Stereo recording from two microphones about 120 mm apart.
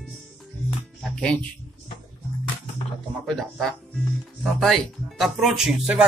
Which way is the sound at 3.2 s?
5° left (ahead or behind).